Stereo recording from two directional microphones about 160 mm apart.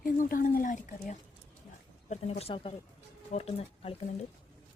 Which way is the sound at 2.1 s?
40° left (ahead or behind).